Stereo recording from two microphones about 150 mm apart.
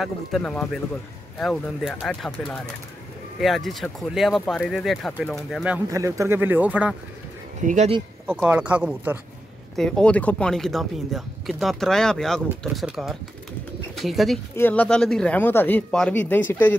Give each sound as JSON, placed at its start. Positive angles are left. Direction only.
{"t": 0.0, "sound": "speech", "side_deg": 5}
{"t": 5.9, "sound": "speech", "side_deg": -20}
{"t": 7.6, "sound": "speech", "side_deg": -50}
{"t": 8.3, "sound": "speech", "side_deg": -10}
{"t": 9.8, "sound": "speech", "side_deg": 5}
{"t": 14.5, "sound": "speech", "side_deg": 15}